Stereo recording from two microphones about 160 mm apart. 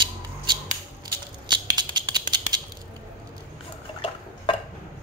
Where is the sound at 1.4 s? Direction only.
30° right (ahead or behind).